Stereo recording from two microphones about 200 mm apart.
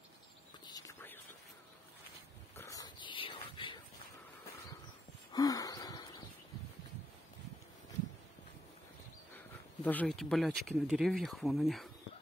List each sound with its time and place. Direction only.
0.7 s whispering: 15° left (ahead or behind)
2.5 s a sound: 15° left (ahead or behind)
5.3 s wheeze: 20° left (ahead or behind)
9.8 s speech: 5° left (ahead or behind)